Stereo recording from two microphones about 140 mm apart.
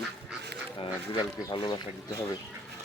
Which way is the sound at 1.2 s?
30° left (ahead or behind).